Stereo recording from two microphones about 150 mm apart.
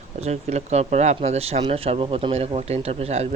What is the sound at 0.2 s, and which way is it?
Speech, 45° right (ahead or behind).